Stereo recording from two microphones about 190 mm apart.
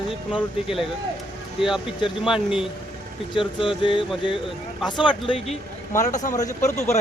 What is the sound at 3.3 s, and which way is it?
Speech, 25° left (ahead or behind).